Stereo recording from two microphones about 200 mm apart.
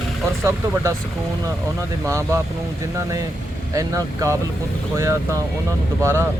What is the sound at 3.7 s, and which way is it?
Speech, 15° right (ahead or behind).